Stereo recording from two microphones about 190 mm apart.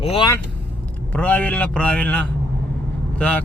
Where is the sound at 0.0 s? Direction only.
30° left (ahead or behind).